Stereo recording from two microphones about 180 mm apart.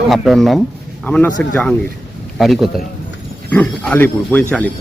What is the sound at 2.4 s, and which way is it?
Speech, centre (ahead or behind).